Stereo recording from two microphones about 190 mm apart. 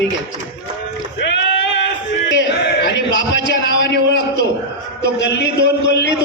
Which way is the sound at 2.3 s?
65° left (ahead or behind).